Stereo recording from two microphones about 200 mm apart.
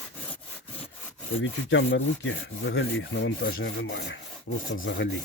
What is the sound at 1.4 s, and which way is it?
Wood, 70° left (ahead or behind).